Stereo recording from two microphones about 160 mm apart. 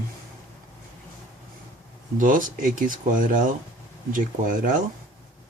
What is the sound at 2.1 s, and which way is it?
Speech, 55° right (ahead or behind).